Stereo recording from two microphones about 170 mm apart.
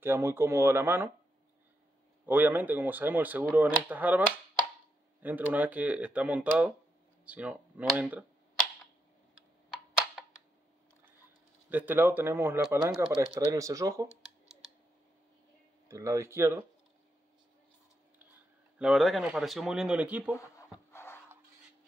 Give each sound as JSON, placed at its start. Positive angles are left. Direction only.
{"t": 0.0, "sound": "speech", "side_deg": -15}
{"t": 2.2, "sound": "speech", "side_deg": -10}
{"t": 5.2, "sound": "speech", "side_deg": -10}
{"t": 11.7, "sound": "speech", "side_deg": -10}
{"t": 12.6, "sound": "speech", "side_deg": 0}
{"t": 13.5, "sound": "speech", "side_deg": -20}
{"t": 15.9, "sound": "speech", "side_deg": -15}
{"t": 18.8, "sound": "speech", "side_deg": 0}
{"t": 20.3, "sound": "a sound", "side_deg": 15}